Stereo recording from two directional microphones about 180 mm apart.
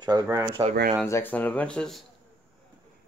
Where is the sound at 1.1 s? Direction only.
10° left (ahead or behind).